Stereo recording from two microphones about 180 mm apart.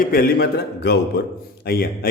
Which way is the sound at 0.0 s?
55° left (ahead or behind).